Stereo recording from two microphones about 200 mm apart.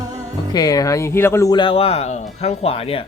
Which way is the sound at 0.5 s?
20° left (ahead or behind).